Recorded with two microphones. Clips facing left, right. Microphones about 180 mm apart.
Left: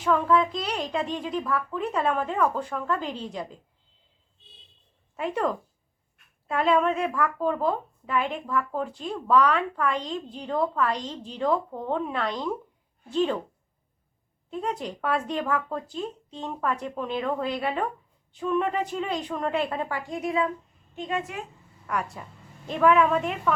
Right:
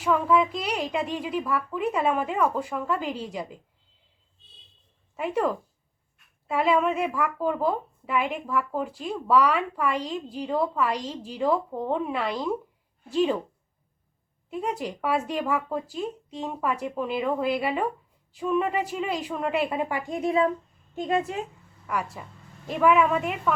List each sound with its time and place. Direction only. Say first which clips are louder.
0.0 s speech: even; 5° right (ahead or behind)
5.1 s a woman's voice: right 1 dB; 5° right (ahead or behind)
14.5 s speech: right 1 dB; 10° right (ahead or behind); by 20.5 s 30° right (ahead or behind)
20.9 s speech: right 5 dB; 40° right (ahead or behind)
21.8 s a woman's voice: even; 5° right (ahead or behind)